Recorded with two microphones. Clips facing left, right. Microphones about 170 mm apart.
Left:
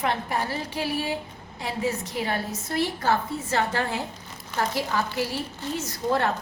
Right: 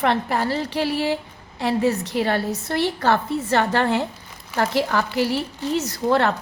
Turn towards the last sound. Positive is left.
turn(degrees=-75)  # may be behind; listen again after turning